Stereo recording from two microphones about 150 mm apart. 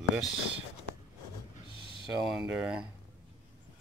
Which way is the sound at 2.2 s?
5° right (ahead or behind).